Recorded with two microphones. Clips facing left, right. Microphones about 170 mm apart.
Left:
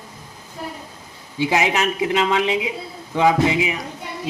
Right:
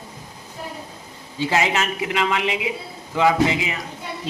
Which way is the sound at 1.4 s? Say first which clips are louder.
Left 2 dB; 15° left (ahead or behind).